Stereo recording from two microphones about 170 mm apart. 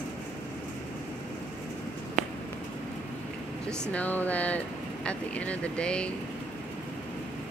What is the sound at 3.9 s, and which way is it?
Speech, 10° left (ahead or behind).